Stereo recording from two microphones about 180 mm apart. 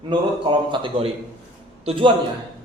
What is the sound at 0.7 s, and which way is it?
A man's voice, 25° right (ahead or behind).